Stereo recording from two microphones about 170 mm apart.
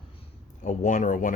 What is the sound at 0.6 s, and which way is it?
Speech, 50° left (ahead or behind).